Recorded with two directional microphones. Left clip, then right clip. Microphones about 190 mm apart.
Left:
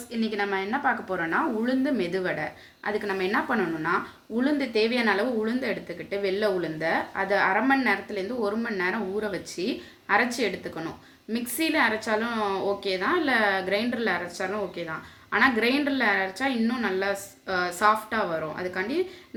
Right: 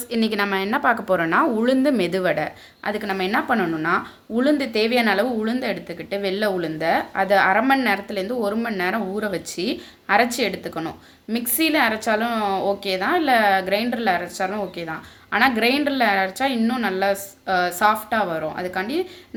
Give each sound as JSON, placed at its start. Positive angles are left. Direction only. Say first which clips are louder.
{"t": 0.1, "sound": "a woman's voice", "louder": "right 6 dB", "side_deg": -55}